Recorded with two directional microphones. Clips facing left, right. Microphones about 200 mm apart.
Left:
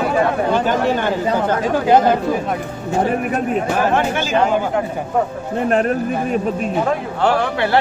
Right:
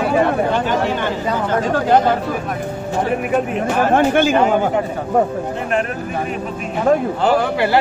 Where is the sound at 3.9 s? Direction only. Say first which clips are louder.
Right 4 dB; 55° right (ahead or behind).